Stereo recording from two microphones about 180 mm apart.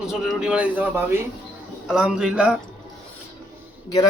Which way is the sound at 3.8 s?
20° left (ahead or behind).